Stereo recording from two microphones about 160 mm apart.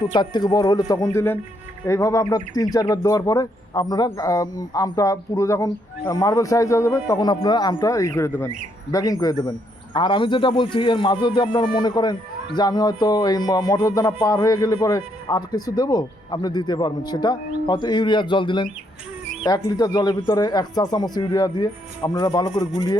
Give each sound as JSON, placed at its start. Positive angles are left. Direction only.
{"t": 0.0, "sound": "speech", "side_deg": 25}